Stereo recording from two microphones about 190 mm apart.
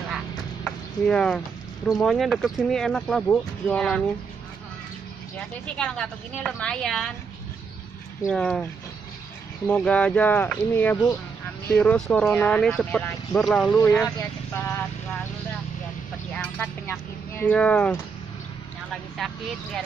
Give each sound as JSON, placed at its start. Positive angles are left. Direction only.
{"t": 0.7, "sound": "a sound", "side_deg": 5}
{"t": 2.0, "sound": "speech", "side_deg": 0}
{"t": 5.8, "sound": "speech", "side_deg": 5}
{"t": 8.3, "sound": "speech", "side_deg": 5}
{"t": 9.7, "sound": "speech", "side_deg": 5}
{"t": 13.7, "sound": "speech", "side_deg": 20}
{"t": 16.3, "sound": "vehicle", "side_deg": 10}
{"t": 18.9, "sound": "speech", "side_deg": 0}